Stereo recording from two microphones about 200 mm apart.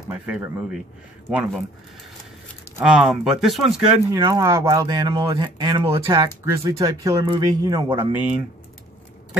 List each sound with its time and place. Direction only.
0.1 s speech: 10° right (ahead or behind)
2.8 s speech: 5° right (ahead or behind)
4.1 s speech: 15° right (ahead or behind)
6.0 s speech: 15° right (ahead or behind)